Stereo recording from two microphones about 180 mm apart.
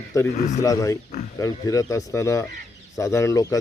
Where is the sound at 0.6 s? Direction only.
20° left (ahead or behind).